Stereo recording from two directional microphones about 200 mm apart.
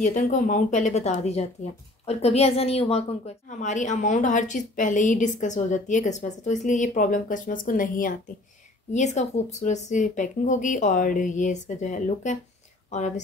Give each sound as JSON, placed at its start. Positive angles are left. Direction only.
{"t": 0.0, "sound": "speech", "side_deg": 40}